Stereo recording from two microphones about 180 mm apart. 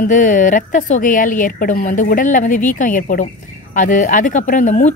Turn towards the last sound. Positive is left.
turn(degrees=45)  # may be behind; listen again after turning